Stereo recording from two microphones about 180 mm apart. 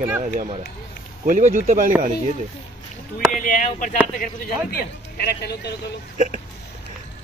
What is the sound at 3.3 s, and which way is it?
Speech, 50° left (ahead or behind).